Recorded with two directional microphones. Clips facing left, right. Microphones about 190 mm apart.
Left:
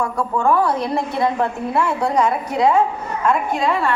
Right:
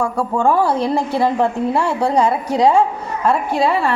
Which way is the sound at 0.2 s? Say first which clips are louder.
Right 1 dB; 25° right (ahead or behind).